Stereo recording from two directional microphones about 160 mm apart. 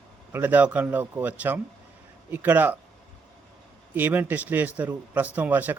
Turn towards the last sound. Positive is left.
turn(degrees=-10)  # may be behind; listen again after turning